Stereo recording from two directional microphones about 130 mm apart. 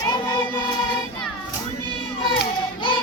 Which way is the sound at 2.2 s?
40° left (ahead or behind).